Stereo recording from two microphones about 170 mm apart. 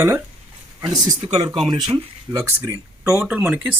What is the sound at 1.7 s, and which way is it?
Speech, 25° right (ahead or behind).